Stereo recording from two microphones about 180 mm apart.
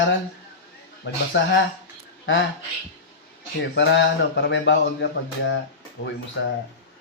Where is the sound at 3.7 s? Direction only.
75° left (ahead or behind).